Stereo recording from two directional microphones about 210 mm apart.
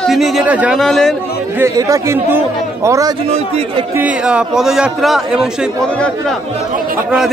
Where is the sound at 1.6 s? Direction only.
15° right (ahead or behind).